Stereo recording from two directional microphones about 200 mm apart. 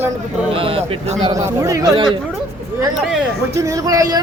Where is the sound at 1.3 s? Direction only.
15° right (ahead or behind).